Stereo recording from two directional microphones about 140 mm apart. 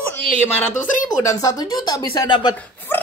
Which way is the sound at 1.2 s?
25° left (ahead or behind).